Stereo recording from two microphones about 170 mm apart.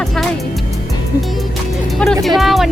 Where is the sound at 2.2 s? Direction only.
Centre (ahead or behind).